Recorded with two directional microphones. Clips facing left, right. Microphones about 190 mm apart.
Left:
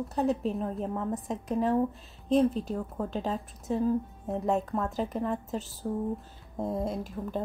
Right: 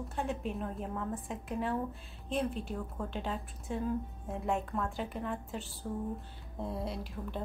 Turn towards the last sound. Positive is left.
turn(degrees=45)  # may be behind; listen again after turning